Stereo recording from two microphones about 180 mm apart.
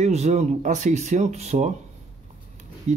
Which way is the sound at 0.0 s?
40° right (ahead or behind).